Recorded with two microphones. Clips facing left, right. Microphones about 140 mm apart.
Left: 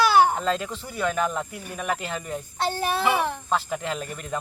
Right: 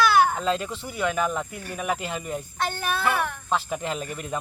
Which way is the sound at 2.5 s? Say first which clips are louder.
Left 4 dB; 30° left (ahead or behind).